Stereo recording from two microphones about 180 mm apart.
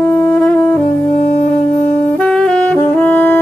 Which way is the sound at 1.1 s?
40° left (ahead or behind).